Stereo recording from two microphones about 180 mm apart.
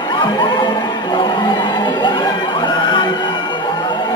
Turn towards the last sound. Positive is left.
turn(degrees=25)  # may be behind; listen again after turning